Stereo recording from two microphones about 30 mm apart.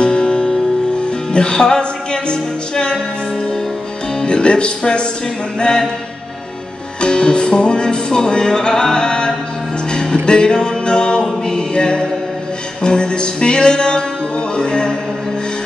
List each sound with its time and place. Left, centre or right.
0.0 s music: left
4.2 s speech: left
5.6 s music: left
7.0 s music: left